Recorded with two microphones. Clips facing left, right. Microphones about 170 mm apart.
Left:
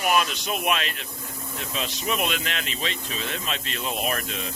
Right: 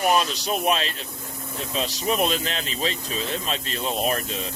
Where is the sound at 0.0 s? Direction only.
35° right (ahead or behind).